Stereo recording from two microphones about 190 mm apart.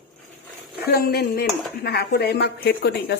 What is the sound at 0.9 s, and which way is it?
A woman's voice, 55° left (ahead or behind).